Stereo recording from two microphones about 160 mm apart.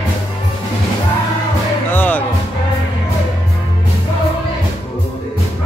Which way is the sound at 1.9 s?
10° left (ahead or behind).